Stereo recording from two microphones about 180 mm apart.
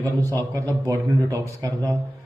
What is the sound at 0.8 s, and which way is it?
Speech, 20° right (ahead or behind).